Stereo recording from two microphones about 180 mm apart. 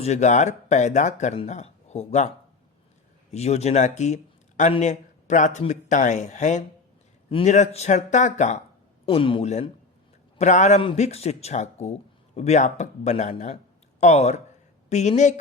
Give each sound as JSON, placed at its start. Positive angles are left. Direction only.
{"t": 0.0, "sound": "speech", "side_deg": 40}
{"t": 3.3, "sound": "speech", "side_deg": 35}
{"t": 9.0, "sound": "speech", "side_deg": 30}